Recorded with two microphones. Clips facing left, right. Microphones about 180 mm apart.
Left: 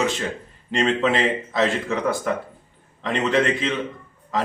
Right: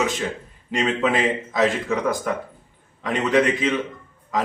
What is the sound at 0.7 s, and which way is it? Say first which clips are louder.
A man's voice: left 1 dB; centre (ahead or behind).